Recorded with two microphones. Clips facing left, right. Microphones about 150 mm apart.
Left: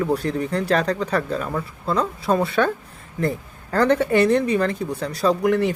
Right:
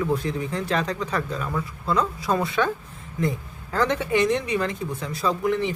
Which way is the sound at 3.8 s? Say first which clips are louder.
Left 5 dB; 35° left (ahead or behind).